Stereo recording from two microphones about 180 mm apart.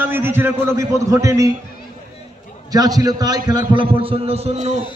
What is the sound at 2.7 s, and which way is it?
A man's voice, 20° right (ahead or behind).